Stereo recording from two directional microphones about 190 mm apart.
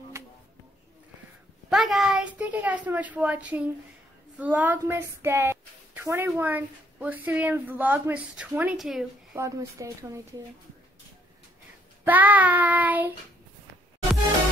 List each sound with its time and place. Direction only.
1.7 s a sound: centre (ahead or behind)
4.4 s speech: 10° right (ahead or behind)
9.4 s speech: 15° right (ahead or behind)
12.0 s speech: 10° right (ahead or behind)